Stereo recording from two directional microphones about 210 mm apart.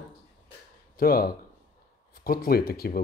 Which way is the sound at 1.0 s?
45° left (ahead or behind).